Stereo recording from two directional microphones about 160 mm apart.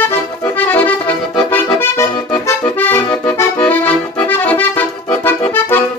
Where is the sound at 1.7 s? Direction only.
20° left (ahead or behind).